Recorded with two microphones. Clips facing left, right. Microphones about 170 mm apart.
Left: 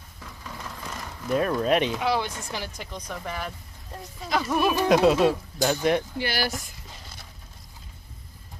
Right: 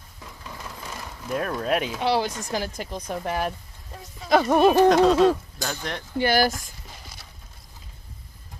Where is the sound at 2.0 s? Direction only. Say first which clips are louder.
Right 3 dB; 35° right (ahead or behind); by 3.5 s 50° right (ahead or behind).